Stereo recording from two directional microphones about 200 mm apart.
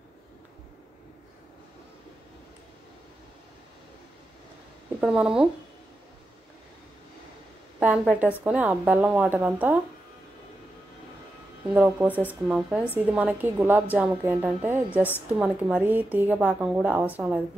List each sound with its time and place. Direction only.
5.0 s speech: 5° right (ahead or behind)
7.8 s a woman's voice: 5° right (ahead or behind)
11.7 s a woman's voice: 10° right (ahead or behind)